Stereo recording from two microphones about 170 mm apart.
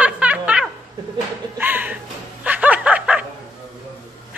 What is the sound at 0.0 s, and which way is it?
Snicker, 5° right (ahead or behind).